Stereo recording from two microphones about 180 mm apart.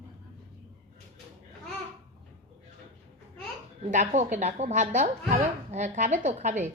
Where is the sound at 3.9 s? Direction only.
40° right (ahead or behind).